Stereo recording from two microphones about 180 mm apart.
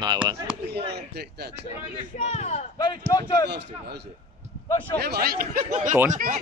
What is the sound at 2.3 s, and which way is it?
Speech, 40° left (ahead or behind).